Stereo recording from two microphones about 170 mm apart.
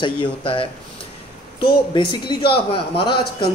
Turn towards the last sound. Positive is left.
turn(degrees=30)  # may be behind; listen again after turning